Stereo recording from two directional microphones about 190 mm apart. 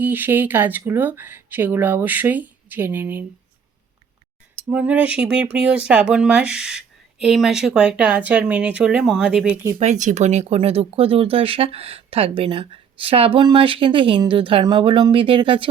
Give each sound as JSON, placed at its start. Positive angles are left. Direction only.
{"t": 0.0, "sound": "speech", "side_deg": -10}
{"t": 4.7, "sound": "speech", "side_deg": -5}
{"t": 9.7, "sound": "speech", "side_deg": -40}